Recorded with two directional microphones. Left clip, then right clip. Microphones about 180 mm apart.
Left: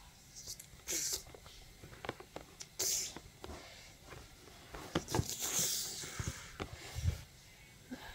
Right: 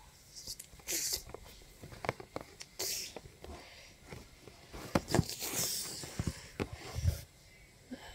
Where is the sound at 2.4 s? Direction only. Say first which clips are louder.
Right 1 dB; 5° right (ahead or behind).